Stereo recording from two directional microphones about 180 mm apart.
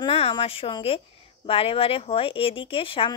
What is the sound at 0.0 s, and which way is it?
A woman's voice, 30° left (ahead or behind).